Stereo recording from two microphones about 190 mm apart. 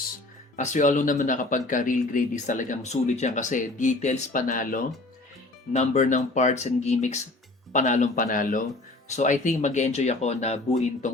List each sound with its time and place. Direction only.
0.5 s a man's voice: 40° left (ahead or behind)